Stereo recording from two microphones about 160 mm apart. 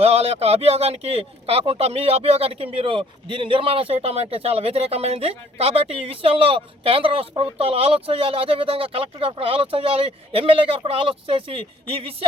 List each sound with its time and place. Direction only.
0.0 s speech: 40° right (ahead or behind)